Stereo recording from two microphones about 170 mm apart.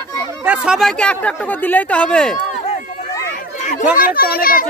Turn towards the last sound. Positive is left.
turn(degrees=60)  # may be behind; listen again after turning